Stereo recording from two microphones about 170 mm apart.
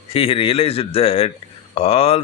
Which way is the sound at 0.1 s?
35° left (ahead or behind).